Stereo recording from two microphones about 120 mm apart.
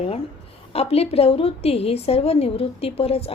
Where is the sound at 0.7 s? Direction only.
55° left (ahead or behind).